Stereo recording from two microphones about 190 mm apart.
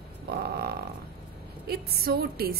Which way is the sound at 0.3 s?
55° right (ahead or behind).